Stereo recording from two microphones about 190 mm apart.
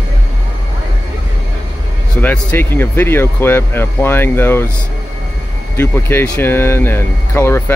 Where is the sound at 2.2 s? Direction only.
10° left (ahead or behind).